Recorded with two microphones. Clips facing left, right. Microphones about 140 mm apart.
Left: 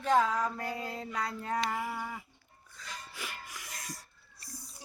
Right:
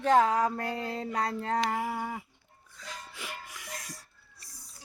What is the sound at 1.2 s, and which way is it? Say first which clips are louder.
Speech: right 4 dB; 65° right (ahead or behind).